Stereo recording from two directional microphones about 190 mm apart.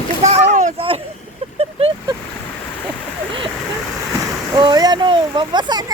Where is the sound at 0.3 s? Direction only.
35° right (ahead or behind).